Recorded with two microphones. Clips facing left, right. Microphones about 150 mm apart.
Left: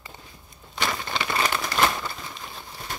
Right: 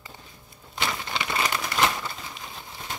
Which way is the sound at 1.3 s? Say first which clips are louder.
Left 1 dB; 35° left (ahead or behind).